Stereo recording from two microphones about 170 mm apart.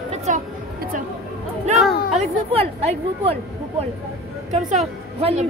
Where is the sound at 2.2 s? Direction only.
40° right (ahead or behind).